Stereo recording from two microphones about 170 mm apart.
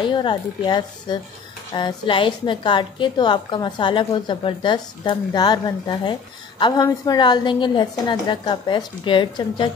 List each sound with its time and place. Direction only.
0.0 s a woman's voice: 30° left (ahead or behind)